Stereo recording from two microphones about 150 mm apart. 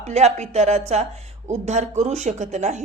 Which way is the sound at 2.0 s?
50° right (ahead or behind).